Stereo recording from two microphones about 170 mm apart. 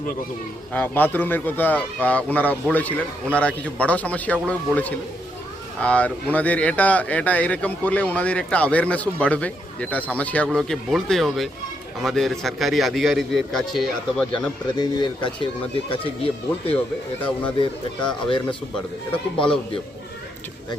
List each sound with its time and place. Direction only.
0.7 s a man's voice: 10° left (ahead or behind)
14.8 s speech: 25° left (ahead or behind)